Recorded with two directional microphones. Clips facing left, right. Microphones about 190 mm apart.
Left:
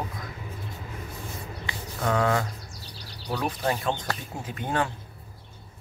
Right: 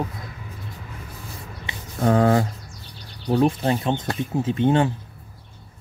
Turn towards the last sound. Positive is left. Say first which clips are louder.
# right 10 dB
turn(degrees=-25)  # may be behind; listen again after turning